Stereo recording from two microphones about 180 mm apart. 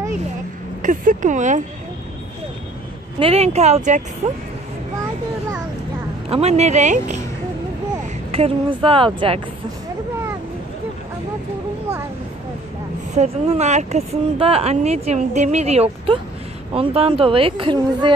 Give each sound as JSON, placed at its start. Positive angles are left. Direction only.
{"t": 0.8, "sound": "speech", "side_deg": -45}
{"t": 3.2, "sound": "speech", "side_deg": -35}
{"t": 6.2, "sound": "speech", "side_deg": -35}
{"t": 8.3, "sound": "speech", "side_deg": -30}
{"t": 13.1, "sound": "speech", "side_deg": -35}